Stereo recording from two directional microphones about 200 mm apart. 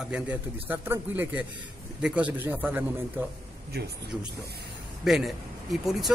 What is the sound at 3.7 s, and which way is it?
Speech, 55° right (ahead or behind).